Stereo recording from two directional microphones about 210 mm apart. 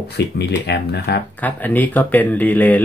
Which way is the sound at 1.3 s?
10° left (ahead or behind).